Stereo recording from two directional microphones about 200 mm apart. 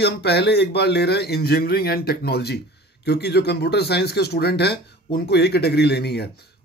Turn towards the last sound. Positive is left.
turn(degrees=55)  # may be behind; listen again after turning